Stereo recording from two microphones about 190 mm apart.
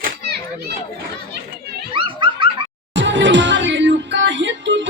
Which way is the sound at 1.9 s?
25° right (ahead or behind).